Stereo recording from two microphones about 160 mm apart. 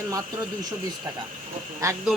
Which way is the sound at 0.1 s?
25° right (ahead or behind).